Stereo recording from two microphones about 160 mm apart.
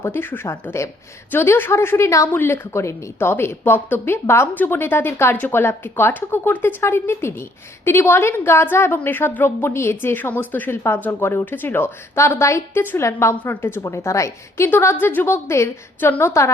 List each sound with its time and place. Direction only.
0.0 s a woman's voice: 15° left (ahead or behind)